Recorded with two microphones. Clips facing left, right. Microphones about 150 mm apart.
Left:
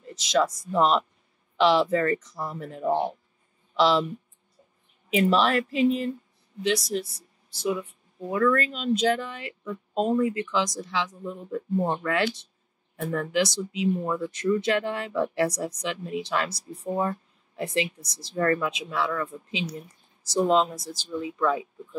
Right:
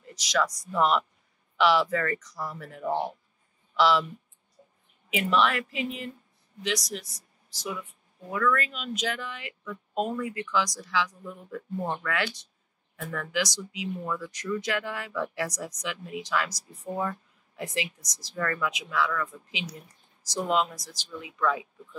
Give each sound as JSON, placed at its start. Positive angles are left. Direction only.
{"t": 0.0, "sound": "speech", "side_deg": 25}
{"t": 5.1, "sound": "speech", "side_deg": 35}